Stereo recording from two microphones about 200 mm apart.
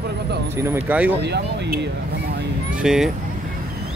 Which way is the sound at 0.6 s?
10° right (ahead or behind).